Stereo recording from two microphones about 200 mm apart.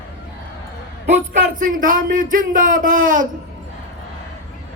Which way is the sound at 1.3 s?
45° right (ahead or behind).